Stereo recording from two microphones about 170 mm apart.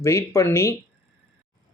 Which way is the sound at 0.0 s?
15° left (ahead or behind).